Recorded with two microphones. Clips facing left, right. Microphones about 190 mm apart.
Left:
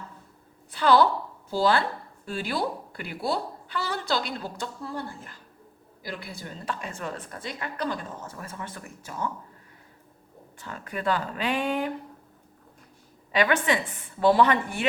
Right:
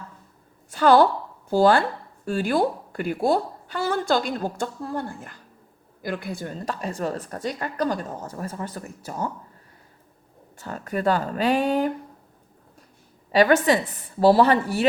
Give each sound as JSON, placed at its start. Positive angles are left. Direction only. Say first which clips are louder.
{"t": 0.7, "sound": "a woman's voice", "louder": "right 4 dB", "side_deg": -45}
{"t": 10.6, "sound": "a woman's voice", "louder": "right 7 dB", "side_deg": -40}
{"t": 13.3, "sound": "a woman's voice", "louder": "right 6 dB", "side_deg": -40}